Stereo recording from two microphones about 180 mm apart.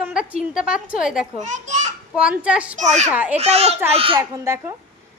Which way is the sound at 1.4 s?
40° right (ahead or behind).